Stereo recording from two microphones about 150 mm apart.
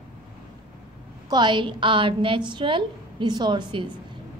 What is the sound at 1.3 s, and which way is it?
A woman's voice, 30° right (ahead or behind).